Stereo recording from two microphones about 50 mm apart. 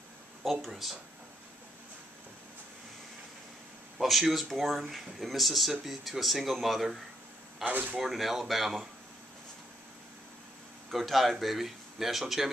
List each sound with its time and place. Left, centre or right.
0.4 s speech: centre
4.0 s speech: centre
7.6 s speech: right
8.0 s speech: centre
10.9 s speech: centre